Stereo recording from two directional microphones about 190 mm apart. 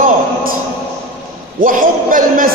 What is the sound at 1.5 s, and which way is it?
Music, 45° right (ahead or behind).